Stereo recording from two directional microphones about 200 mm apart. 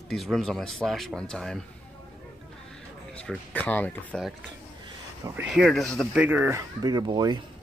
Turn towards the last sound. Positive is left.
turn(degrees=-20)  # may be behind; listen again after turning